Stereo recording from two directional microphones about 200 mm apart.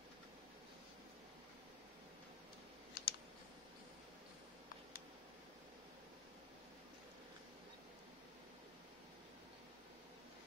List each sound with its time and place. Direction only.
3.0 s clicking: 60° left (ahead or behind)